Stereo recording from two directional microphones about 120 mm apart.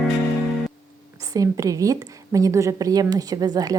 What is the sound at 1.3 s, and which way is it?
A woman's voice, 30° right (ahead or behind).